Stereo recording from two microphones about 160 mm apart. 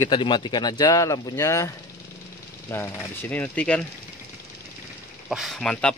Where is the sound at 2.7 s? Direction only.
15° left (ahead or behind).